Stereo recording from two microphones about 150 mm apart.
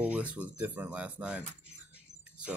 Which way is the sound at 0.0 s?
10° right (ahead or behind).